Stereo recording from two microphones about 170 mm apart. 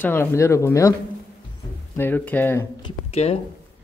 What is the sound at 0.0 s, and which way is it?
Speech, 10° left (ahead or behind).